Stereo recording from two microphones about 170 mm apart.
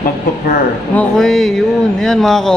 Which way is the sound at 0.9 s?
5° left (ahead or behind).